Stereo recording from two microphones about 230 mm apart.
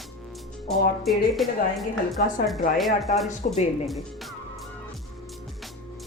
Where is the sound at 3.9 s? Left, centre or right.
Centre.